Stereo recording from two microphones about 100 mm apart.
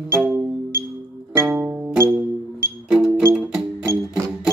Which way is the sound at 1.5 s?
15° right (ahead or behind).